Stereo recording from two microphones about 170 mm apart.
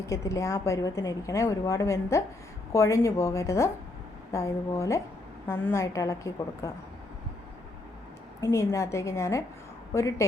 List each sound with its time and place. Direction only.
0.0 s a woman's voice: 20° left (ahead or behind)
8.4 s a woman's voice: 15° left (ahead or behind)